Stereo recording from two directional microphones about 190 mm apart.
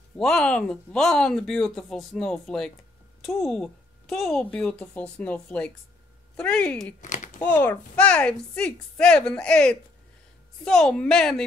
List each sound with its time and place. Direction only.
0.2 s speech: 5° left (ahead or behind)
7.0 s speech: 40° left (ahead or behind)
7.4 s speech: 10° left (ahead or behind)